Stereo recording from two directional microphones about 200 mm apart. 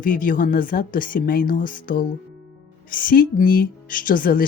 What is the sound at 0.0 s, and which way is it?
Speech, 45° left (ahead or behind).